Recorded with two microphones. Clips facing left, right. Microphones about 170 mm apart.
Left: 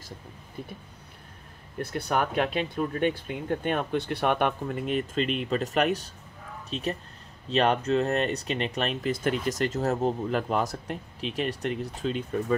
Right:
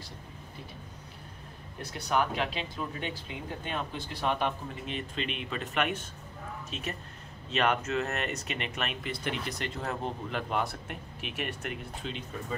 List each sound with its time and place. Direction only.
1.8 s speech: 55° left (ahead or behind)